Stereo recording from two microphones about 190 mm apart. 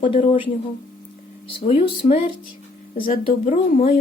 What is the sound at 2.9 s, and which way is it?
Speech, 45° left (ahead or behind).